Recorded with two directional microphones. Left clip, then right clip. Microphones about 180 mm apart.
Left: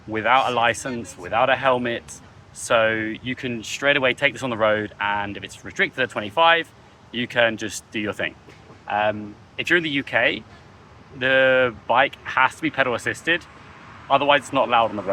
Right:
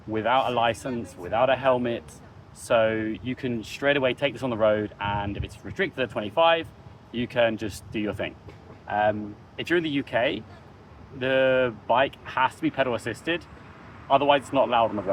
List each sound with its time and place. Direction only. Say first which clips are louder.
0.1 s speech: left 4 dB; 10° left (ahead or behind)